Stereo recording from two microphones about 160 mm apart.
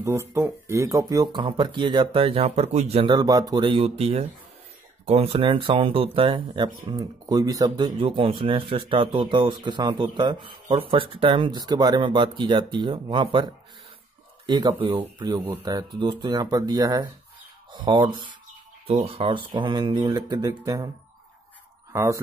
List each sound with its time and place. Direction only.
0.0 s speech: 15° right (ahead or behind)
21.9 s speech: 20° right (ahead or behind)